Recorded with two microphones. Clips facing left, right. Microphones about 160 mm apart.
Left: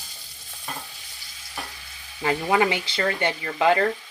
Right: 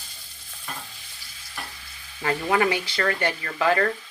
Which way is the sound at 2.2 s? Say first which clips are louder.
Left 1 dB; 20° left (ahead or behind).